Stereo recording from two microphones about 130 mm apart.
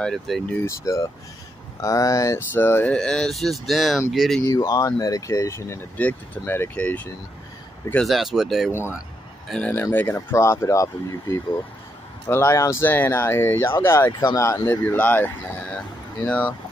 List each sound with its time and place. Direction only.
0.0 s speech: 5° left (ahead or behind)
0.7 s speech: 20° left (ahead or behind); by 4.4 s centre (ahead or behind)
4.5 s speech: 30° left (ahead or behind); by 7.1 s 10° left (ahead or behind)
7.9 s speech: centre (ahead or behind)
9.5 s speech: 10° left (ahead or behind)